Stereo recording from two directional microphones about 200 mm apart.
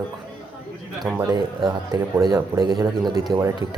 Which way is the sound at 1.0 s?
15° right (ahead or behind).